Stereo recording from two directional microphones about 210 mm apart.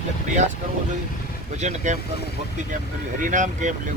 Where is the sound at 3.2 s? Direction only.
40° right (ahead or behind).